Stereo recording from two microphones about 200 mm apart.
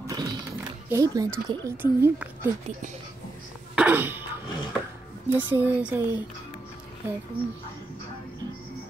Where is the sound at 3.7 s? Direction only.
10° right (ahead or behind).